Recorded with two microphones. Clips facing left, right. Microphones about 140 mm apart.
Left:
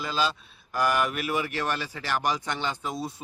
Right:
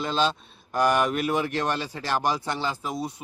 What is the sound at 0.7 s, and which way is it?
Speech, 20° right (ahead or behind).